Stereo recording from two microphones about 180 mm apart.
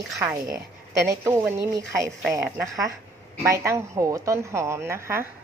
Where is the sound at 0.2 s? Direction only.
15° right (ahead or behind).